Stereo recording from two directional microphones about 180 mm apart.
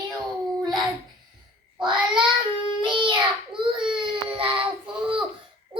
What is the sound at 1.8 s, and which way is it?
Child singing, 25° right (ahead or behind).